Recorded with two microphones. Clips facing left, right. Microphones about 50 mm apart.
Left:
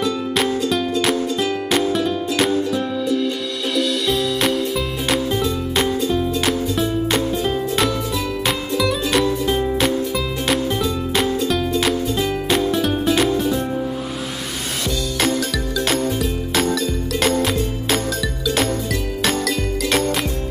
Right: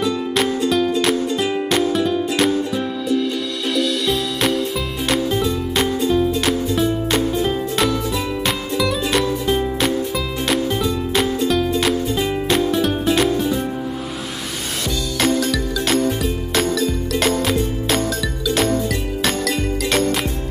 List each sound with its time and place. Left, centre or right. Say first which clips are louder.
0.7 s music: right 2 dB; centre
15.8 s music: right 1 dB; centre
19.2 s jingle bell: even; centre